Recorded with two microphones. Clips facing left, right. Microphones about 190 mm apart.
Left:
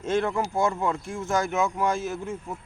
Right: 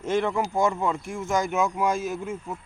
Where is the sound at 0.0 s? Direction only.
15° right (ahead or behind).